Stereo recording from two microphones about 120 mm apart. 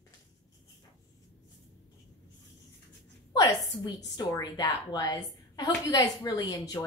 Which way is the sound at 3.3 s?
30° left (ahead or behind).